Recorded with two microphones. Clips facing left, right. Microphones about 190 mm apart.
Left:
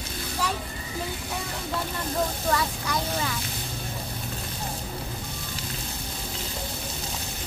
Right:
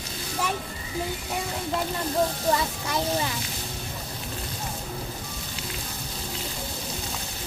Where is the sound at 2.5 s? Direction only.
20° right (ahead or behind).